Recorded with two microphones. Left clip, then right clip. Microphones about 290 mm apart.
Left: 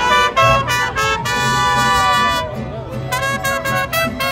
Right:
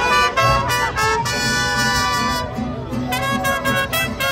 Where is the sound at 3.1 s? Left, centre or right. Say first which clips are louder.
Left 2 dB; centre.